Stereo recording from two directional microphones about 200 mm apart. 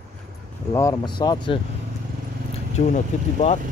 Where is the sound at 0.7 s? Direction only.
15° left (ahead or behind).